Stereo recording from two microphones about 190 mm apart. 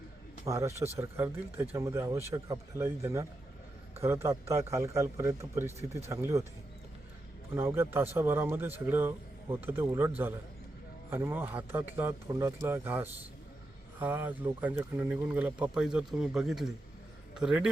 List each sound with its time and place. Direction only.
0.4 s speech: 15° right (ahead or behind)
7.5 s speech: 10° right (ahead or behind)
11.1 s a man's voice: 10° right (ahead or behind)